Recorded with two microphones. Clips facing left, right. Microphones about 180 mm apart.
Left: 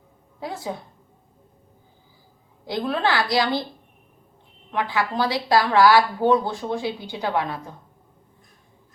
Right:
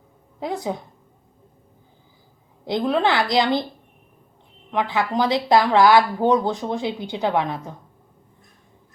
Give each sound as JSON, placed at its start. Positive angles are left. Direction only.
{"t": 0.3, "sound": "a woman's voice", "side_deg": -20}
{"t": 2.6, "sound": "a woman's voice", "side_deg": -20}
{"t": 4.7, "sound": "a woman's voice", "side_deg": -20}